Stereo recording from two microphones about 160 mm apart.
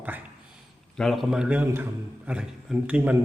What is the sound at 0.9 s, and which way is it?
A man's voice, centre (ahead or behind).